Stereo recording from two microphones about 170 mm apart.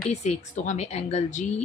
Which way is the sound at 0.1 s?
40° left (ahead or behind).